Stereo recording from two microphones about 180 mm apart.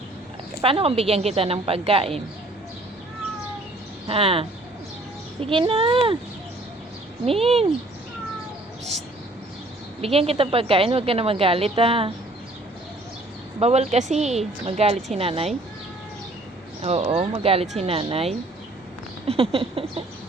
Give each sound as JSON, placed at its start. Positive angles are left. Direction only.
{"t": 0.6, "sound": "a woman's voice", "side_deg": -30}
{"t": 4.0, "sound": "speech", "side_deg": -30}
{"t": 7.3, "sound": "a woman's voice", "side_deg": -30}
{"t": 10.0, "sound": "a woman's voice", "side_deg": -35}
{"t": 13.6, "sound": "a woman's voice", "side_deg": -35}
{"t": 16.8, "sound": "a woman's voice", "side_deg": -35}